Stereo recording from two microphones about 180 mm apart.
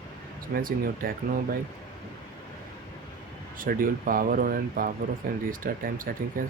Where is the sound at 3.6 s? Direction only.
50° right (ahead or behind).